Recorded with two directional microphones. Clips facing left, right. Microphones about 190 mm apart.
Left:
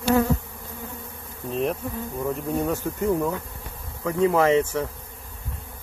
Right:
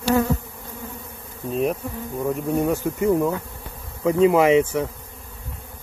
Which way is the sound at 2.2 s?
10° right (ahead or behind).